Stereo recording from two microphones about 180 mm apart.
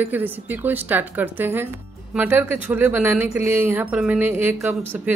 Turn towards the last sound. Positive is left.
turn(degrees=-15)  # may be behind; listen again after turning